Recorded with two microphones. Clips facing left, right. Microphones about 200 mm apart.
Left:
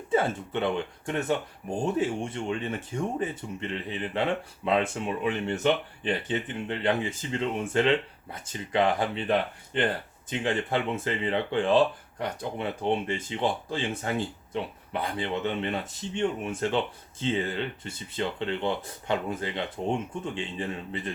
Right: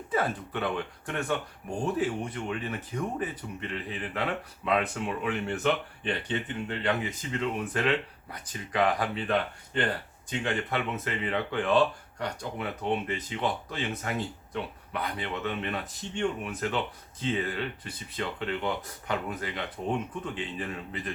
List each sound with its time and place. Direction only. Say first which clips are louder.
0.1 s speech: left 4 dB; 25° left (ahead or behind)
6.7 s speech: left 4 dB; 30° left (ahead or behind)
10.4 s speech: left 3 dB; 30° left (ahead or behind)